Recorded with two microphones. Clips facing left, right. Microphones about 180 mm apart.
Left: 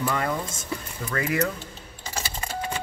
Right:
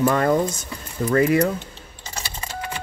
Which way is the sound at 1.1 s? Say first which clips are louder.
Right 8 dB; 35° right (ahead or behind).